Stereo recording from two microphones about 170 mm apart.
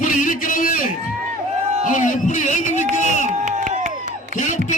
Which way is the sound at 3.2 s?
45° right (ahead or behind).